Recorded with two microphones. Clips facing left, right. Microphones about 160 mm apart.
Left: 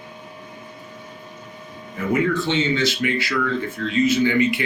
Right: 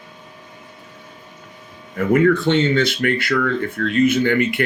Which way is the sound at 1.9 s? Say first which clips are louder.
Right 6 dB; 55° right (ahead or behind).